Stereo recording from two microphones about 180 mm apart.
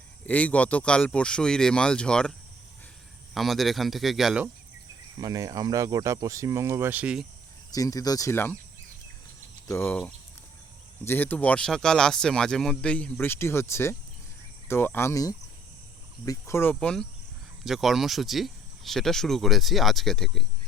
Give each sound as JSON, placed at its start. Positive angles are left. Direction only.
{"t": 0.3, "sound": "speech", "side_deg": 10}
{"t": 3.3, "sound": "speech", "side_deg": 0}
{"t": 5.2, "sound": "speech", "side_deg": -20}
{"t": 7.7, "sound": "speech", "side_deg": 20}
{"t": 9.6, "sound": "speech", "side_deg": 15}
{"t": 11.0, "sound": "speech", "side_deg": 10}